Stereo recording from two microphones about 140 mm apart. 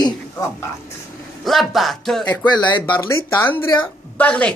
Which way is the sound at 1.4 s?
Centre (ahead or behind).